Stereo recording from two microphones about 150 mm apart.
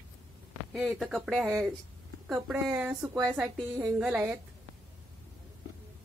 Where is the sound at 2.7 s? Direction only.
10° right (ahead or behind).